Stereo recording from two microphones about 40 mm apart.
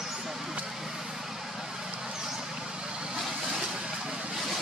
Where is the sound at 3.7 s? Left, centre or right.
Centre.